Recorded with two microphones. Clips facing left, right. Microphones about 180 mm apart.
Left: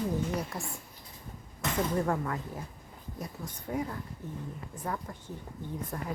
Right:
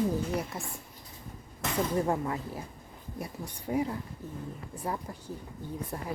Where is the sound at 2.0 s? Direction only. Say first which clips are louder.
Right 1 dB; 20° right (ahead or behind).